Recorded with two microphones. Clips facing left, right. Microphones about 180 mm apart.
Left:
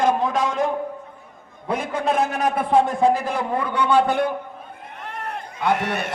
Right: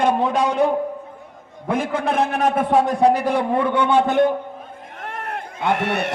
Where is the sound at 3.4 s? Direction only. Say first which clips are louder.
Right 4 dB; 25° right (ahead or behind).